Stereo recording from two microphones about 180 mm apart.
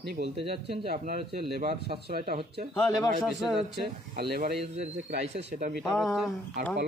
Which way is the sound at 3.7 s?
60° right (ahead or behind).